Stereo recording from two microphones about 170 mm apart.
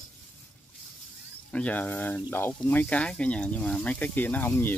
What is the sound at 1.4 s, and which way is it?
Speech, 5° left (ahead or behind).